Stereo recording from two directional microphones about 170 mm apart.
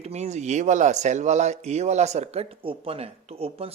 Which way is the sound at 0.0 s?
40° right (ahead or behind).